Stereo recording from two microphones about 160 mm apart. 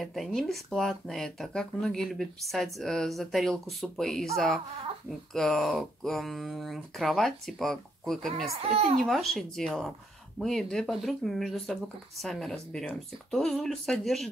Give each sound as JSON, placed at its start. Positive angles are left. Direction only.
{"t": 0.0, "sound": "speech", "side_deg": 0}
{"t": 8.5, "sound": "a child's voice", "side_deg": -40}
{"t": 9.0, "sound": "speech", "side_deg": 0}